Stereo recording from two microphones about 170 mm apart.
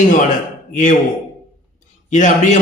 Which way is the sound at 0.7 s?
45° left (ahead or behind).